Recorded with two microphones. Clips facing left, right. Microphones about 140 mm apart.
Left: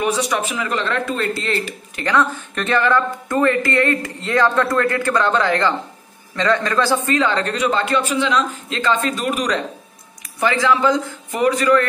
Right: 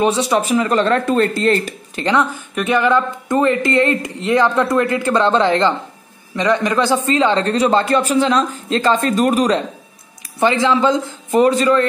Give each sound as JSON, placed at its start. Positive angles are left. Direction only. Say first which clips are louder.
{"t": 0.0, "sound": "a man's voice", "louder": "right 4 dB", "side_deg": -30}
{"t": 2.0, "sound": "speech", "louder": "right 2 dB", "side_deg": -20}
{"t": 2.5, "sound": "a man's voice", "louder": "right 3 dB", "side_deg": -10}